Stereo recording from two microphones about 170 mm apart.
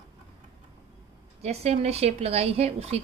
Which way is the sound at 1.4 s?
40° right (ahead or behind).